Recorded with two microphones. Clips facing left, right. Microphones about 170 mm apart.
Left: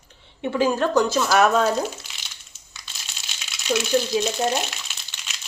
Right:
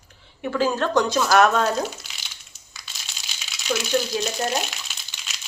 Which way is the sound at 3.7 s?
25° left (ahead or behind).